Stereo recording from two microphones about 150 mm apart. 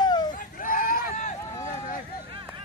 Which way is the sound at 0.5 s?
70° left (ahead or behind).